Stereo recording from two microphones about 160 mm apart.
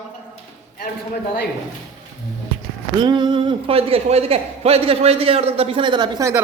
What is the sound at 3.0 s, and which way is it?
Speech, 30° right (ahead or behind).